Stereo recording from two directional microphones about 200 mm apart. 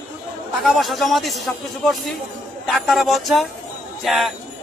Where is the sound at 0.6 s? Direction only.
Centre (ahead or behind).